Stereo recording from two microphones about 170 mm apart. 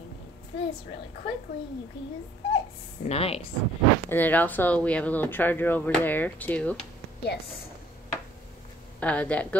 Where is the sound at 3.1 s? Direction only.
35° left (ahead or behind).